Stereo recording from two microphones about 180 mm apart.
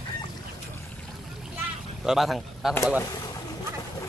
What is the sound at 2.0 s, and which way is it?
Speech, centre (ahead or behind).